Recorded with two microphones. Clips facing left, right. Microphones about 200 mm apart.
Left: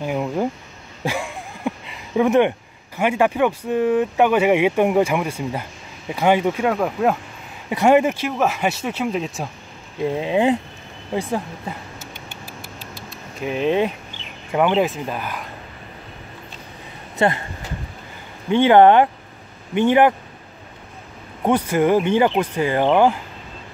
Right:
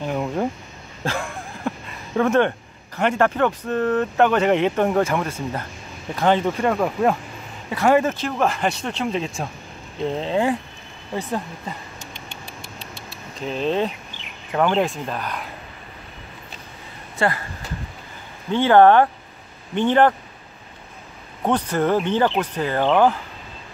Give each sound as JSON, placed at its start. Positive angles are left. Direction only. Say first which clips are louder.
{"t": 0.0, "sound": "speech", "louder": "left 1 dB", "side_deg": 5}
{"t": 1.0, "sound": "a sound", "louder": "left 1 dB", "side_deg": 5}
{"t": 2.1, "sound": "speech", "louder": "left 2 dB", "side_deg": 15}
{"t": 7.7, "sound": "speech", "louder": "left 3 dB", "side_deg": 20}
{"t": 11.1, "sound": "a sound", "louder": "left 3 dB", "side_deg": 10}
{"t": 12.9, "sound": "keys jangling", "louder": "left 1 dB", "side_deg": 10}
{"t": 14.5, "sound": "speech", "louder": "left 2 dB", "side_deg": 10}
{"t": 17.2, "sound": "speech", "louder": "left 3 dB", "side_deg": 20}
{"t": 18.5, "sound": "speech", "louder": "left 1 dB", "side_deg": 15}
{"t": 21.5, "sound": "speech", "louder": "left 3 dB", "side_deg": 10}